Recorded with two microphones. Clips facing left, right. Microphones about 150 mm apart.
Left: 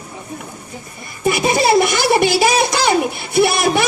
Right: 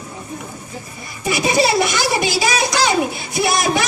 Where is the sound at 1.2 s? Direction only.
50° left (ahead or behind).